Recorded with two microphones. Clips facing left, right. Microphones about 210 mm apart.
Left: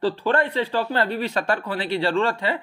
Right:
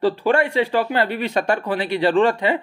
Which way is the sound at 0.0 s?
10° right (ahead or behind).